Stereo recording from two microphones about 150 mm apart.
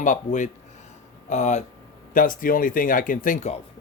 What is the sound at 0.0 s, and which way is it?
Speech, 60° left (ahead or behind).